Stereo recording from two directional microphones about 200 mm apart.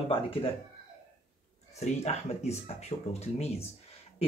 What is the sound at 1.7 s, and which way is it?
Speech, 30° left (ahead or behind).